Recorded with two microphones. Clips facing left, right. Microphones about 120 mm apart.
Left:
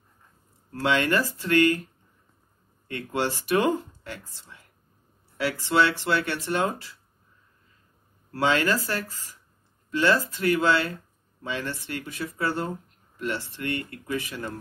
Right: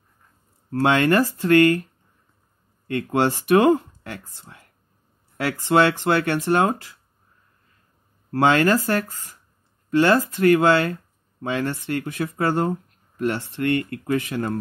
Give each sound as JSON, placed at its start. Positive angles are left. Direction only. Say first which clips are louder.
{"t": 0.8, "sound": "speech", "louder": "right 5 dB", "side_deg": -50}
{"t": 2.9, "sound": "speech", "louder": "right 7 dB", "side_deg": -55}
{"t": 8.3, "sound": "speech", "louder": "right 6 dB", "side_deg": -55}